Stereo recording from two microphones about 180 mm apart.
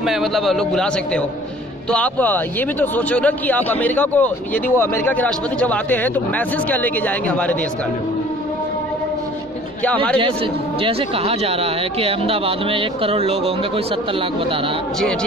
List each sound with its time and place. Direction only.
0.0 s a man's voice: centre (ahead or behind)
10.8 s speech: 35° right (ahead or behind)